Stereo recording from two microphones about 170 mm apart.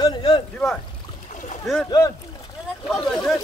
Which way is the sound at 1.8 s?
20° left (ahead or behind).